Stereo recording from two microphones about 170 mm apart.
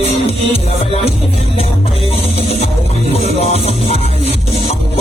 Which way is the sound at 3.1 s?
35° left (ahead or behind).